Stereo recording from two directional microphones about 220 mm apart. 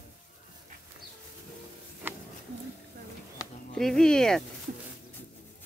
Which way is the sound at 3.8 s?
Centre (ahead or behind).